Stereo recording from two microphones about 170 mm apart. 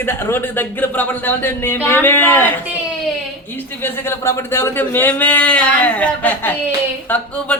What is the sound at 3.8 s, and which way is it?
Speech, 15° left (ahead or behind).